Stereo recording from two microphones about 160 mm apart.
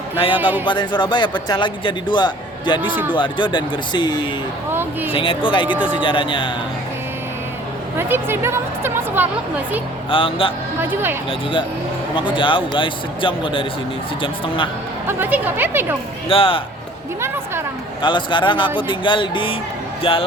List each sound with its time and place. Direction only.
0.3 s speech: 10° right (ahead or behind)
0.6 s a man's voice: 30° left (ahead or behind)
4.7 s speech: 10° right (ahead or behind)
5.1 s speech: 35° left (ahead or behind)
7.9 s a woman's voice: 15° right (ahead or behind)
10.1 s speech: 35° left (ahead or behind)
10.8 s speech: 15° right (ahead or behind)
12.1 s speech: 30° left (ahead or behind)
15.0 s speech: 10° right (ahead or behind)
16.3 s speech: 35° left (ahead or behind)
17.2 s speech: 15° right (ahead or behind)
18.0 s a man's voice: 30° left (ahead or behind)